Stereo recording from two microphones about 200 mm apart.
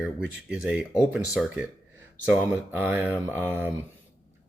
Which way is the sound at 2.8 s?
10° right (ahead or behind).